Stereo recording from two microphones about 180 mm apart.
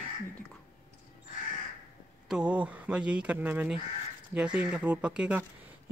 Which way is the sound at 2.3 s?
5° right (ahead or behind).